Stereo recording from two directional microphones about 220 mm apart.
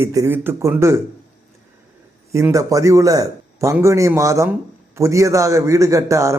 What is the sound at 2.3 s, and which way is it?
Speech, 15° right (ahead or behind).